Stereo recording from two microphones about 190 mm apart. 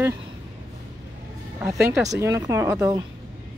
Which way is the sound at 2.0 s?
15° right (ahead or behind).